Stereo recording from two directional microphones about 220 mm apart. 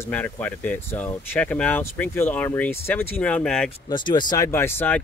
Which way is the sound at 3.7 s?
20° left (ahead or behind).